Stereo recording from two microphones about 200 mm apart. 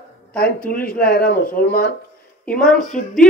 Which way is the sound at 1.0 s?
50° left (ahead or behind).